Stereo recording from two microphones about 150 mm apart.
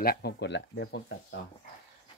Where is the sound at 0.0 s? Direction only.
80° left.